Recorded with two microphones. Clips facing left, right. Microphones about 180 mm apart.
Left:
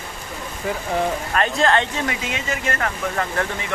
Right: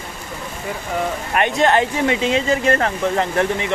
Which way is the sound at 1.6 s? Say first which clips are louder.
Right 5 dB; 25° right (ahead or behind).